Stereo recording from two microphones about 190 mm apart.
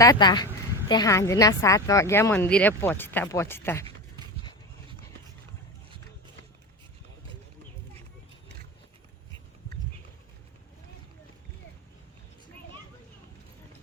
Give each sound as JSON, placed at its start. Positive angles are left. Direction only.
{"t": 0.0, "sound": "a woman's voice", "side_deg": 20}